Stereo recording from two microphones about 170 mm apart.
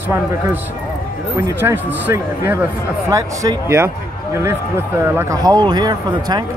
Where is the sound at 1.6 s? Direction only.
10° right (ahead or behind).